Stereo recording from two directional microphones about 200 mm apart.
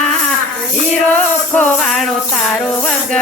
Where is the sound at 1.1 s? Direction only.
5° left (ahead or behind).